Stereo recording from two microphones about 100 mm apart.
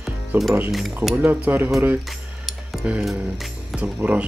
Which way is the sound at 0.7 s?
Centre (ahead or behind).